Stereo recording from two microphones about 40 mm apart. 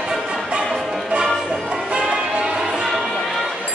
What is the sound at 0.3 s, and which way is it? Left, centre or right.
Music, right.